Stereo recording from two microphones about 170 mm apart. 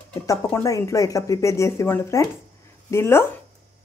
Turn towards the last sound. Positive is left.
turn(degrees=15)  # may be behind; listen again after turning